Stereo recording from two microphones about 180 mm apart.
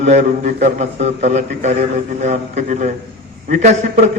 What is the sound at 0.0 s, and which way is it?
A man's voice, 40° right (ahead or behind).